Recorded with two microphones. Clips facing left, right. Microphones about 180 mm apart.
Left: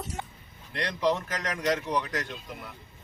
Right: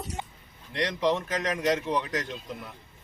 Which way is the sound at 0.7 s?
20° right (ahead or behind).